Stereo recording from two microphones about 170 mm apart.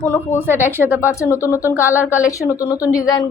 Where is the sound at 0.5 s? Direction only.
10° right (ahead or behind).